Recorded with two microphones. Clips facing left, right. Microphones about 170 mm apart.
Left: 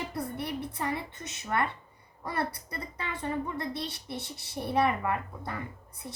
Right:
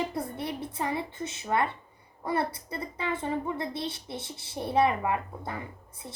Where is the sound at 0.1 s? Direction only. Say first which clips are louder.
Right 1 dB; 25° right (ahead or behind).